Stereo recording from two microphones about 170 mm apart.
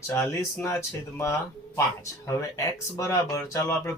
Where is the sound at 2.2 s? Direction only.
20° left (ahead or behind).